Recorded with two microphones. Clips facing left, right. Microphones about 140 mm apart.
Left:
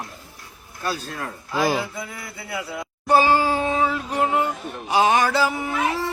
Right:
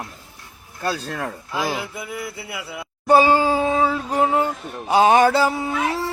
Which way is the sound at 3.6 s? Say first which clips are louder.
Right 3 dB; 35° right (ahead or behind).